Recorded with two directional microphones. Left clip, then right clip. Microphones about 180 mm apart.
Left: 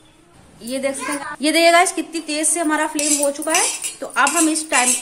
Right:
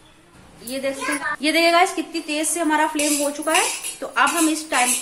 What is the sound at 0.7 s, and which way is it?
A woman's voice, 35° left (ahead or behind).